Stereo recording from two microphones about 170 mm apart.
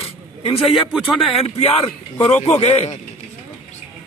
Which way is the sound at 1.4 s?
35° left (ahead or behind).